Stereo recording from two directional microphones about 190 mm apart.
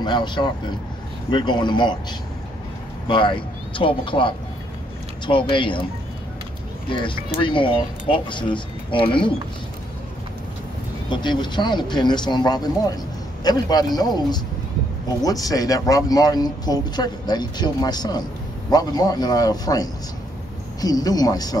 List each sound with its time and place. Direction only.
0.0 s speech: 25° left (ahead or behind)
6.9 s speech: 25° left (ahead or behind)
11.1 s speech: 25° left (ahead or behind)